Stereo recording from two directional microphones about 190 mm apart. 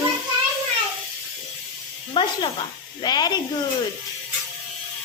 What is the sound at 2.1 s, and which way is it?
Speech, 25° left (ahead or behind).